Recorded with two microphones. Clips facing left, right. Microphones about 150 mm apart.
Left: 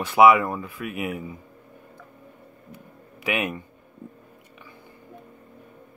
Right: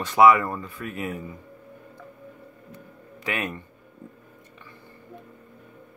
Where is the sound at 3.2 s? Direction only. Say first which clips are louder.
Left 3 dB; 10° left (ahead or behind).